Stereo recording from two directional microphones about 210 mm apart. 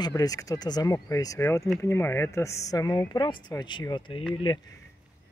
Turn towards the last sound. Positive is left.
turn(degrees=20)  # may be behind; listen again after turning